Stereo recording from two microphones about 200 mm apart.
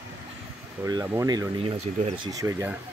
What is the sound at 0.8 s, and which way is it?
Speech, 15° right (ahead or behind).